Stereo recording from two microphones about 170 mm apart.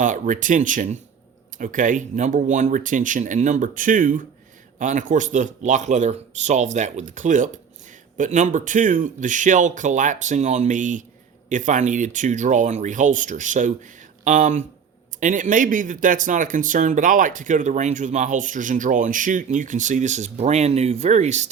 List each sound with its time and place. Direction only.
0.0 s speech: 50° right (ahead or behind)